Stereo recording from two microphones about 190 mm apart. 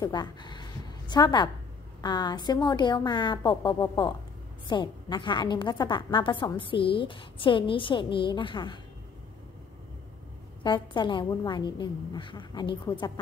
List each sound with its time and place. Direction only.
0.0 s a woman's voice: 20° left (ahead or behind)
10.6 s a woman's voice: 25° left (ahead or behind)